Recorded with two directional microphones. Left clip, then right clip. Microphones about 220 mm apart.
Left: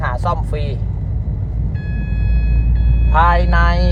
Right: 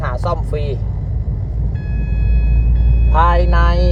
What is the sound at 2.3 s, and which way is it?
Vehicle, 15° left (ahead or behind).